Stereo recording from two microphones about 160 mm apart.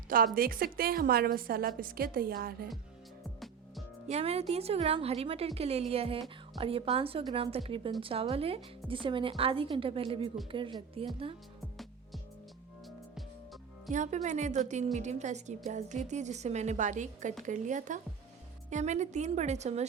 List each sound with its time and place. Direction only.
0.3 s a woman's voice: 65° right (ahead or behind)
4.1 s speech: 40° right (ahead or behind)
13.1 s music: centre (ahead or behind)
13.9 s a woman's voice: 50° right (ahead or behind)